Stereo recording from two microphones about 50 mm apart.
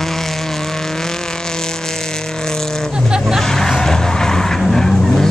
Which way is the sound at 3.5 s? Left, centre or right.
Centre.